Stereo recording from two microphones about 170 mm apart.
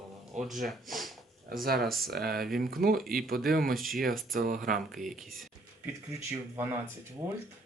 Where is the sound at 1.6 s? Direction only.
65° right (ahead or behind).